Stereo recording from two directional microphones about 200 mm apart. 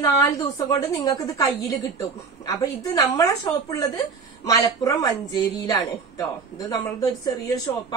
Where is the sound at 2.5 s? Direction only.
15° left (ahead or behind).